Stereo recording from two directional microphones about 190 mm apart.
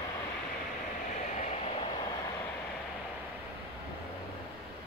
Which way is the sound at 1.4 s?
25° left (ahead or behind).